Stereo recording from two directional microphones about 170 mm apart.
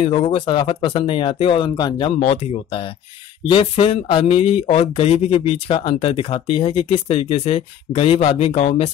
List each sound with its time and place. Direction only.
0.0 s speech: 35° left (ahead or behind)
2.2 s speech: 35° left (ahead or behind)